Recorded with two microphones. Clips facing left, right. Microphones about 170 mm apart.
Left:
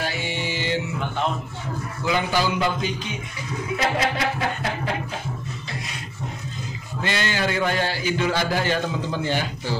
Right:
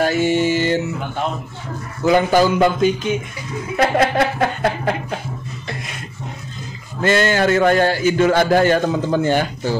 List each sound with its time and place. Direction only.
0.0 s music: 45° right (ahead or behind)
2.0 s a man's voice: 45° right (ahead or behind)
3.7 s a sound: 55° right (ahead or behind)
7.0 s a man's voice: 50° right (ahead or behind)